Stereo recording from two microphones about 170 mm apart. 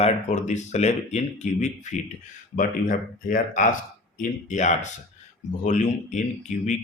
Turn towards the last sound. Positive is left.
turn(degrees=45)  # may be behind; listen again after turning